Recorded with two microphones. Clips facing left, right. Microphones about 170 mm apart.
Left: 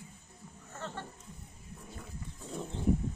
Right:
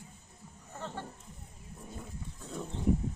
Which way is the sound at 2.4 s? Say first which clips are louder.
Even; 20° left (ahead or behind).